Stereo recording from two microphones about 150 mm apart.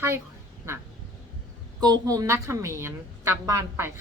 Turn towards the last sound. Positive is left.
turn(degrees=-15)  # may be behind; listen again after turning